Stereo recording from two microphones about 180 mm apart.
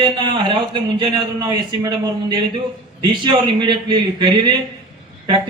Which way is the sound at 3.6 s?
25° right (ahead or behind).